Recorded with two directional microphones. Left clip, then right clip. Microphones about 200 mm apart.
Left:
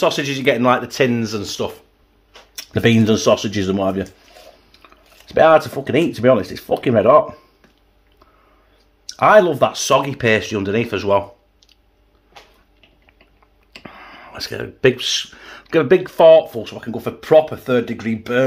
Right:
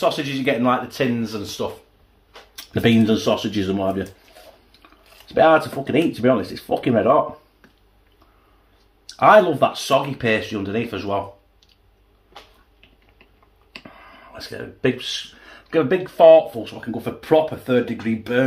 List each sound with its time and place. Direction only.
0.0 s speech: 65° left (ahead or behind); by 1.7 s 45° left (ahead or behind)
2.5 s speech: 60° left (ahead or behind)
9.0 s speech: 60° left (ahead or behind)
13.8 s speech: 55° left (ahead or behind)